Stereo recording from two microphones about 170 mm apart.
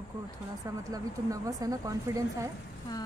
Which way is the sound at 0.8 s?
20° right (ahead or behind).